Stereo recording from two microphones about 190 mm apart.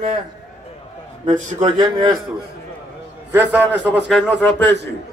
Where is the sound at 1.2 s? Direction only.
40° right (ahead or behind).